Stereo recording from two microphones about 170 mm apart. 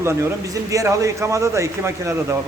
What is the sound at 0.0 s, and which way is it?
A man's voice, 15° right (ahead or behind).